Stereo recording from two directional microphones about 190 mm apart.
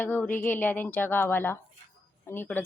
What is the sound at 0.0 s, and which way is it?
A woman's voice, 10° left (ahead or behind).